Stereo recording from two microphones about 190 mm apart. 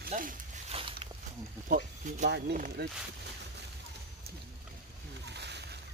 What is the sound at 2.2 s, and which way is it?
Speech, 60° right (ahead or behind).